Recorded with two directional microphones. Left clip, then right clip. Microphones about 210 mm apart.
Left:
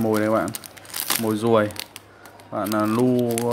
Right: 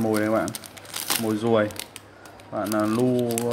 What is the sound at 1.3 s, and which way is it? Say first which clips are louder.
Speech: left 3 dB; 15° left (ahead or behind).